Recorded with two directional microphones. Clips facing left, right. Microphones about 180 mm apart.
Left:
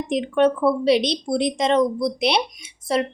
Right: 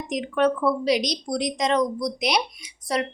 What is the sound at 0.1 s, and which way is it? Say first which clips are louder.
Speech: left 3 dB; 25° left (ahead or behind).